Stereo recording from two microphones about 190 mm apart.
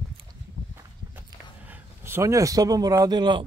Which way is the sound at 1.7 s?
10° right (ahead or behind).